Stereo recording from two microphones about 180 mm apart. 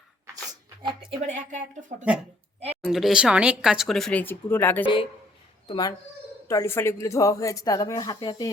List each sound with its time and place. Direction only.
1.3 s speech: 45° right (ahead or behind)
2.8 s speech: centre (ahead or behind)
5.6 s speech: 25° left (ahead or behind)